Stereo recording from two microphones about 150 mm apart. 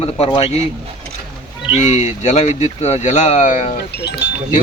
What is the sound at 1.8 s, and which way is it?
Speech, 50° left (ahead or behind).